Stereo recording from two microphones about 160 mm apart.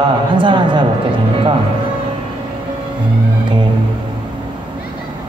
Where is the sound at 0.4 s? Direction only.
30° right (ahead or behind).